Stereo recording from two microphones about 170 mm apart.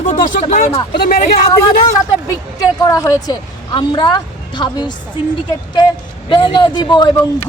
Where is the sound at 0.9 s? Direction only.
65° left (ahead or behind).